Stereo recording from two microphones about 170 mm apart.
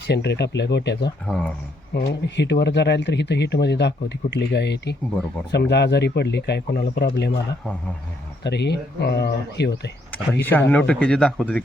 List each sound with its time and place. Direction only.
0.1 s speech: 85° left
1.3 s speech: 5° left (ahead or behind)
1.9 s speech: 70° left (ahead or behind)
8.4 s speech: 80° left
10.4 s speech: 10° left (ahead or behind)